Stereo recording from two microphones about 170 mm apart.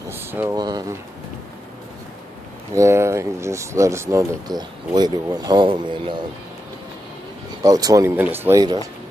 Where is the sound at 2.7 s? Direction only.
15° right (ahead or behind).